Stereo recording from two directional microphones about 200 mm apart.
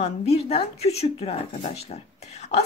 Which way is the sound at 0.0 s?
30° left (ahead or behind).